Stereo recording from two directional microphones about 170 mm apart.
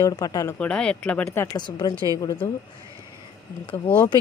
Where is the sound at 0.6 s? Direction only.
5° left (ahead or behind); by 2.4 s 20° left (ahead or behind).